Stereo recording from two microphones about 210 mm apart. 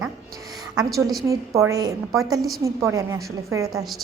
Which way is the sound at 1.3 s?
15° right (ahead or behind).